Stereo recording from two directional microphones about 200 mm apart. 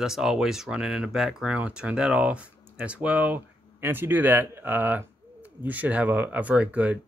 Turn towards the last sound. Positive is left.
turn(degrees=-5)  # may be behind; listen again after turning